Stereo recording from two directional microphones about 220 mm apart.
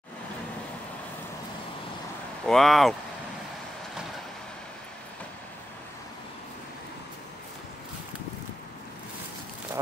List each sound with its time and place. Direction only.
2.4 s speech: centre (ahead or behind)